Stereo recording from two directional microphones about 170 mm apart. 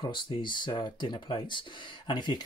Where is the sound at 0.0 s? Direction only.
30° left (ahead or behind).